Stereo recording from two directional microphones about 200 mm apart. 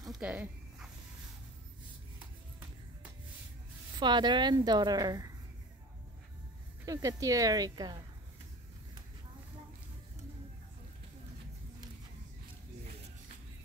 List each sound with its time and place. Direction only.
0.0 s a sound: 5° right (ahead or behind)
4.0 s a woman's voice: 20° right (ahead or behind)
6.9 s speech: 15° right (ahead or behind)